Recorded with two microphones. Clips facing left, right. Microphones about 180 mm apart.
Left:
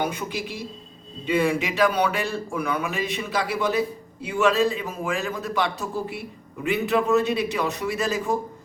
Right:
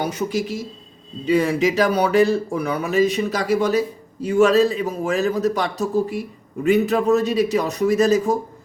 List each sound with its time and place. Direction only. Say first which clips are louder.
0.0 s speech: right 5 dB; 40° right (ahead or behind)